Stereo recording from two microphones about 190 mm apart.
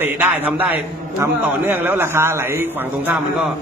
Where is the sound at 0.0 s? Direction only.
10° right (ahead or behind).